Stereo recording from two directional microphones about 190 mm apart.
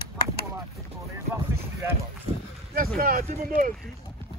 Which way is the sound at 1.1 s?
15° right (ahead or behind).